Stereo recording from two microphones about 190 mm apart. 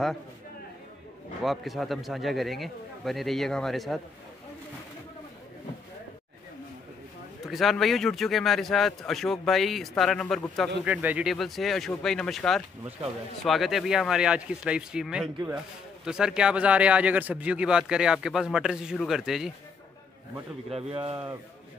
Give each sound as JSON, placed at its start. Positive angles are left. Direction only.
{"t": 1.4, "sound": "speech", "side_deg": 0}
{"t": 7.4, "sound": "speech", "side_deg": 0}
{"t": 10.8, "sound": "speech", "side_deg": -10}
{"t": 20.7, "sound": "speech", "side_deg": -30}